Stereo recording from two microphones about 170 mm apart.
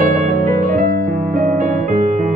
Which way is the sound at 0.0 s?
50° right (ahead or behind).